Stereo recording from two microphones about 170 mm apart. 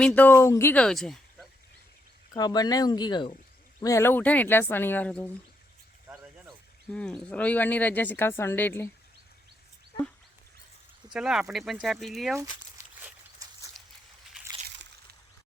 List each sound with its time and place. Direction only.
0.0 s speech: 10° left (ahead or behind)
2.3 s speech: 25° left (ahead or behind)
6.9 s speech: 5° left (ahead or behind)
11.1 s speech: 5° right (ahead or behind)
13.4 s a sound: 20° right (ahead or behind)